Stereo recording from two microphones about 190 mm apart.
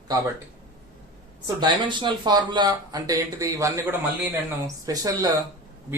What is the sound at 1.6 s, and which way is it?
Speech, 25° right (ahead or behind).